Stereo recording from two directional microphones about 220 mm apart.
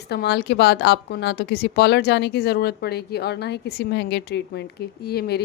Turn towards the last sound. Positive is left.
turn(degrees=45)  # may be behind; listen again after turning